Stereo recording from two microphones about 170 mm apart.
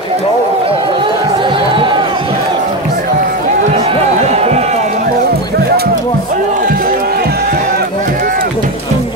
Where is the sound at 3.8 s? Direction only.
40° right (ahead or behind).